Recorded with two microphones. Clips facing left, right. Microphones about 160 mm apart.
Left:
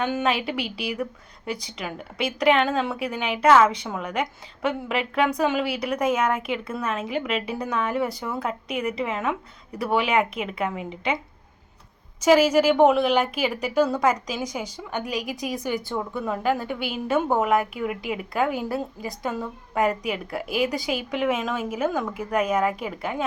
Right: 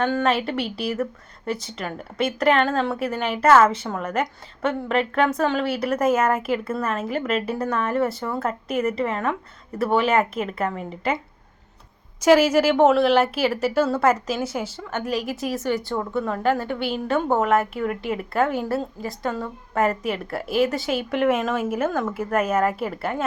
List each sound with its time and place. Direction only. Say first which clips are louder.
0.0 s a woman's voice: right 3 dB; 5° left (ahead or behind)
12.4 s speech: even; 10° left (ahead or behind)
12.6 s a woman's voice: right 1 dB; centre (ahead or behind)